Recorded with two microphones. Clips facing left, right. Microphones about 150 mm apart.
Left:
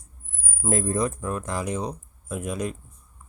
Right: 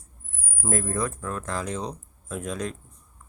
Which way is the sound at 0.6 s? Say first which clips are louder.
Left 3 dB; 20° left (ahead or behind).